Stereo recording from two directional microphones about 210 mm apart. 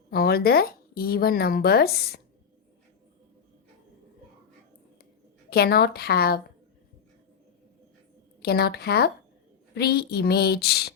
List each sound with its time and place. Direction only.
0.1 s speech: 45° left (ahead or behind)
5.5 s speech: 50° left (ahead or behind)
8.4 s speech: 50° left (ahead or behind)